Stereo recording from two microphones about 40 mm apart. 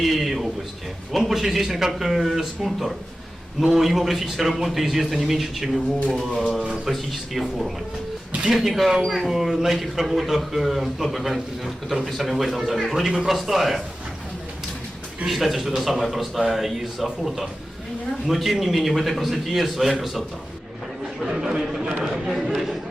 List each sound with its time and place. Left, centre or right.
0.0 s a sound: centre
1.1 s speech: centre
6.5 s speech: right
6.9 s speech: centre
15.3 s speech: centre
22.5 s chatter: centre